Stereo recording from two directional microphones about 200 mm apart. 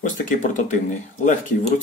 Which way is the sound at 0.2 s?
40° left (ahead or behind).